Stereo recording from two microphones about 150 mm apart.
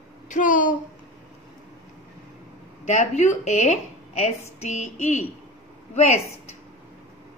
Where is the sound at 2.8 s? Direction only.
50° left (ahead or behind).